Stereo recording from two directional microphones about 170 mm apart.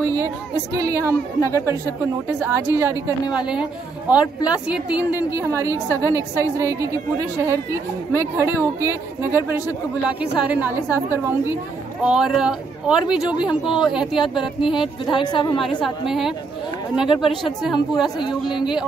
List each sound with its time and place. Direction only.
0.7 s a woman's voice: 20° right (ahead or behind)
4.2 s speech: 25° left (ahead or behind)
4.6 s a woman's voice: 5° right (ahead or behind)
15.1 s speech: 25° left (ahead or behind)
15.8 s speech: centre (ahead or behind)